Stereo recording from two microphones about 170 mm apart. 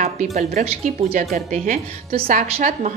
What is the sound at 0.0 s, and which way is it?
A woman's voice, 40° right (ahead or behind).